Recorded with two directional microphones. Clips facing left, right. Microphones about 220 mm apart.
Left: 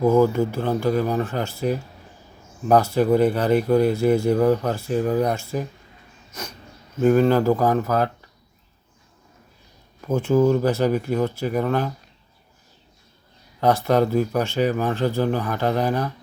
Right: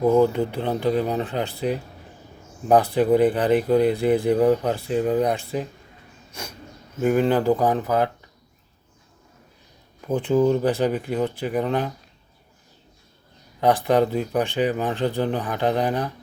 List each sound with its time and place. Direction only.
0.0 s speech: 20° right (ahead or behind)
7.0 s speech: 15° right (ahead or behind)
10.1 s speech: 15° right (ahead or behind)
13.6 s speech: 15° right (ahead or behind)